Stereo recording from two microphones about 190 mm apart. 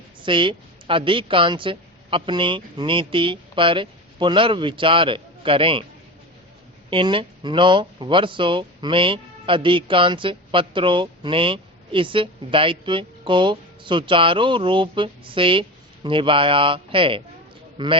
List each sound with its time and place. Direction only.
0.2 s a woman's voice: 25° right (ahead or behind)
6.9 s speech: 25° right (ahead or behind)